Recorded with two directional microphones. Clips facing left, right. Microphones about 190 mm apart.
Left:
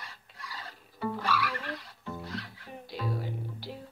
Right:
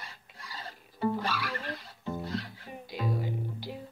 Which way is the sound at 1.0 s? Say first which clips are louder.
Right 1 dB; 30° right (ahead or behind).